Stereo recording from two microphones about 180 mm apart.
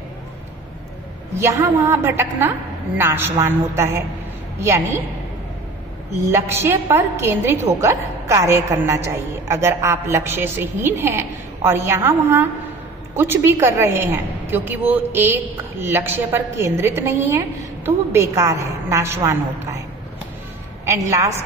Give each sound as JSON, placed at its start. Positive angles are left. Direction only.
{"t": 1.3, "sound": "a woman's voice", "side_deg": -15}
{"t": 6.2, "sound": "a woman's voice", "side_deg": -15}
{"t": 21.1, "sound": "a woman's voice", "side_deg": -15}